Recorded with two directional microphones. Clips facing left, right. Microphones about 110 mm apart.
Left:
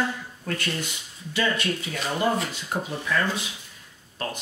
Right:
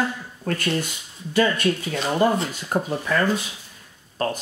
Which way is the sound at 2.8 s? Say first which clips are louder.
Right 4 dB; 45° right (ahead or behind).